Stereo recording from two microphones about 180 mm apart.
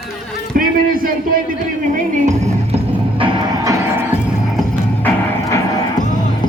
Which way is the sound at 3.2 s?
20° right (ahead or behind).